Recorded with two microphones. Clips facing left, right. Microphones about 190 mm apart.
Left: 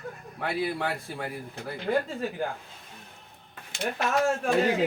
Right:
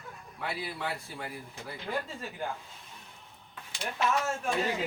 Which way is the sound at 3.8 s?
60° left (ahead or behind).